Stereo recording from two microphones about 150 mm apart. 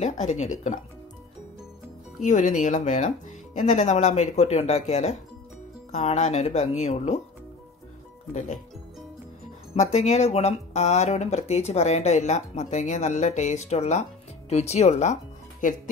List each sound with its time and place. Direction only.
0.0 s speech: 50° left (ahead or behind)
2.2 s speech: 55° left (ahead or behind)
8.3 s speech: 55° left (ahead or behind)
9.8 s speech: 50° left (ahead or behind)
15.6 s speech: 60° left (ahead or behind)